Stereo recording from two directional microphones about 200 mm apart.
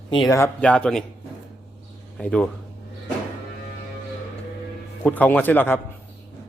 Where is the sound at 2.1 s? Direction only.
5° left (ahead or behind).